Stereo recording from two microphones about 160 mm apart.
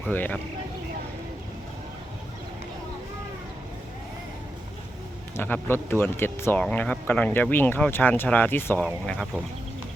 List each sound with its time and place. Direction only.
0.0 s speech: 10° left (ahead or behind)
5.4 s speech: 15° left (ahead or behind)